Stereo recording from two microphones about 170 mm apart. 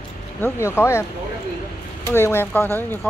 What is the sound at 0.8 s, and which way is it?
Speech, 15° left (ahead or behind).